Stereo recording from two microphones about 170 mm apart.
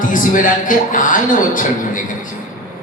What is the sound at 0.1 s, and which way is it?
A man's voice, 50° left (ahead or behind).